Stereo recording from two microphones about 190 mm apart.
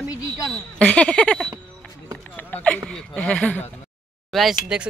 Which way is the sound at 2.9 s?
5° left (ahead or behind).